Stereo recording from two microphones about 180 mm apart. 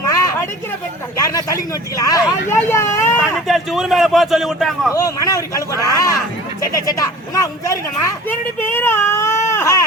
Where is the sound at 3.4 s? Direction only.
Centre (ahead or behind).